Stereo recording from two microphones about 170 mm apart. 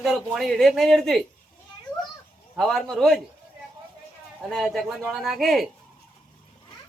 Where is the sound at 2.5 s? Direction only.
Centre (ahead or behind).